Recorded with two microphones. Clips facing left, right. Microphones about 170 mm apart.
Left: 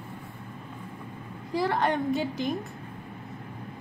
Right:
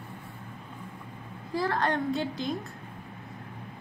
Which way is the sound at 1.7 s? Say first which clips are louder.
Left 2 dB; 15° left (ahead or behind).